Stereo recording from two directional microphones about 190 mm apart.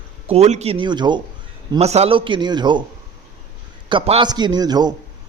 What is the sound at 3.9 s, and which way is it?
A man's voice, 25° right (ahead or behind).